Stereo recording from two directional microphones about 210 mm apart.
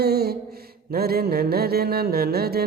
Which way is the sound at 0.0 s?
50° right (ahead or behind).